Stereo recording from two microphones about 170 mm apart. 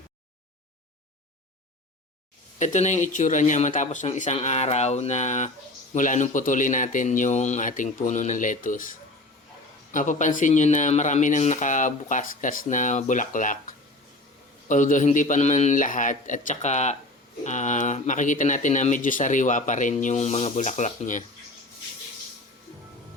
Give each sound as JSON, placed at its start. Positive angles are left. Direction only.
{"t": 2.6, "sound": "speech", "side_deg": 45}